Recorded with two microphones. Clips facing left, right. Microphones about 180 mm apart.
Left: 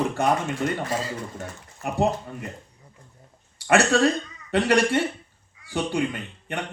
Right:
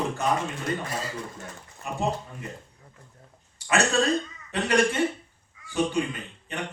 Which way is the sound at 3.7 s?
65° left (ahead or behind).